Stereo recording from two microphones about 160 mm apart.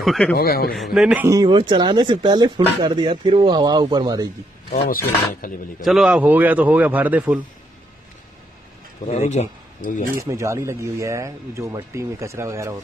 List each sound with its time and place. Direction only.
0.0 s a man's voice: centre (ahead or behind)
0.4 s a man's voice: 70° left (ahead or behind)
0.7 s a man's voice: centre (ahead or behind)
1.3 s speech: 25° right (ahead or behind)
5.4 s a man's voice: 60° left (ahead or behind)
5.9 s speech: 5° right (ahead or behind)
9.0 s speech: 45° left (ahead or behind)
10.2 s speech: 20° right (ahead or behind)